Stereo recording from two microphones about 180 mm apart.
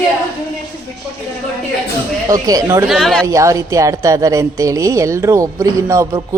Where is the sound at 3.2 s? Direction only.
15° right (ahead or behind).